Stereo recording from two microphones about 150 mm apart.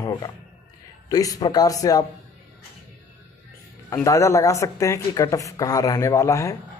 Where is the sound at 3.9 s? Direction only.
20° left (ahead or behind).